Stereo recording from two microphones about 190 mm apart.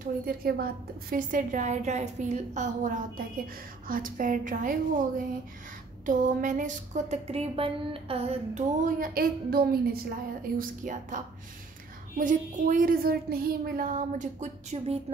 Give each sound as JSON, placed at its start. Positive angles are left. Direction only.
{"t": 0.0, "sound": "a woman's voice", "side_deg": -50}
{"t": 6.0, "sound": "speech", "side_deg": -40}
{"t": 10.6, "sound": "speech", "side_deg": -45}
{"t": 12.2, "sound": "speech", "side_deg": -40}